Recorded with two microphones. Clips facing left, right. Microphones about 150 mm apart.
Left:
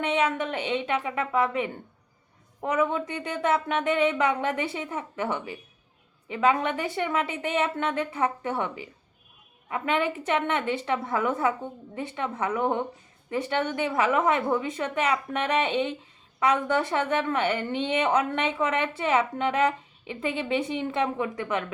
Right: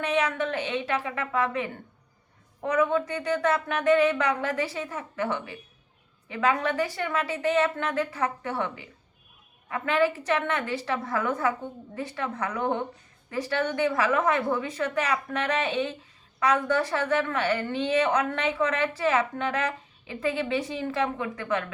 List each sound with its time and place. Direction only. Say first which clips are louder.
0.0 s speech: left 1 dB; 25° left (ahead or behind)